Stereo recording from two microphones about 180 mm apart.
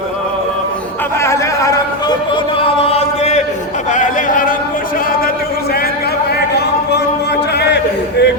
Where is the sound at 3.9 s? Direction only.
45° left (ahead or behind).